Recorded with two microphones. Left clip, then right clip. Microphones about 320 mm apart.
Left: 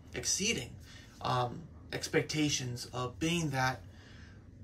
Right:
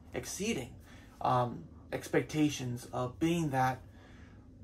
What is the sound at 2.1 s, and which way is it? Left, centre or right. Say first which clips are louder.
Speech: even; centre.